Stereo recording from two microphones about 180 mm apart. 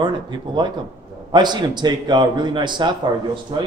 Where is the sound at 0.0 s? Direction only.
25° right (ahead or behind).